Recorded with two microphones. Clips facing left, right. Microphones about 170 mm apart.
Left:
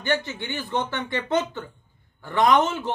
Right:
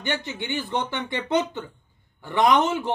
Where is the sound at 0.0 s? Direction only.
20° right (ahead or behind).